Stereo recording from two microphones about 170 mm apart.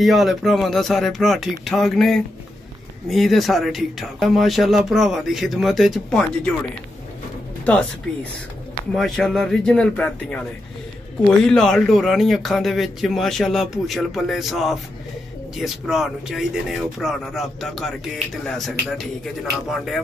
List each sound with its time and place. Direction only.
0.0 s speech: centre (ahead or behind)
7.6 s speech: 10° left (ahead or behind)